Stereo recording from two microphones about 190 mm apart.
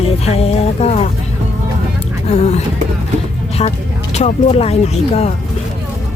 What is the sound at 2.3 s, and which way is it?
Speech, 35° left (ahead or behind).